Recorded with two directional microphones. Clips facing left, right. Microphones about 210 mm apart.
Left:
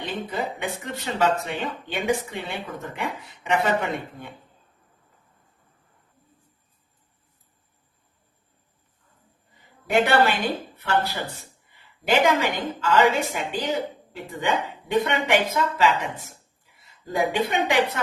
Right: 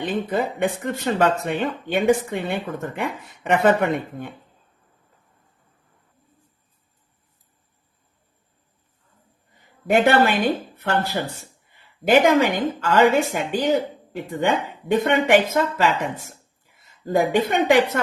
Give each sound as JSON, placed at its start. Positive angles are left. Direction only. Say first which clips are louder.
{"t": 0.0, "sound": "speech", "louder": "right 6 dB", "side_deg": -55}
{"t": 9.9, "sound": "a woman's voice", "louder": "right 3 dB", "side_deg": -50}